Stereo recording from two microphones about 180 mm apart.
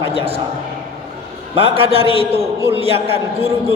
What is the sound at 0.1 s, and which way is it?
Speech, 35° right (ahead or behind).